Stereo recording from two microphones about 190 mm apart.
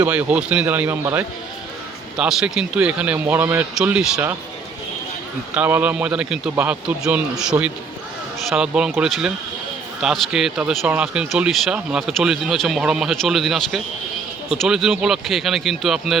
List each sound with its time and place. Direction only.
0.0 s a man's voice: 10° right (ahead or behind)
5.5 s a man's voice: 10° right (ahead or behind)